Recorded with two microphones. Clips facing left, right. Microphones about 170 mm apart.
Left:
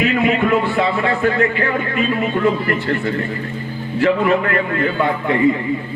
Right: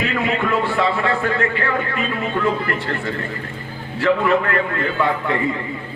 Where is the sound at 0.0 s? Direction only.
20° left (ahead or behind).